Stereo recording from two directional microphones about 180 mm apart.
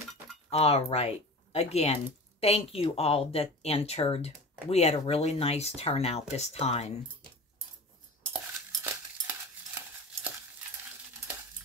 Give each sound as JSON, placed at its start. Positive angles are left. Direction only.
{"t": 0.5, "sound": "a woman's voice", "side_deg": 35}